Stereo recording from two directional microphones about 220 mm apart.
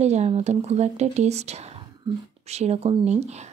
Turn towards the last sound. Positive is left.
turn(degrees=-30)  # may be behind; listen again after turning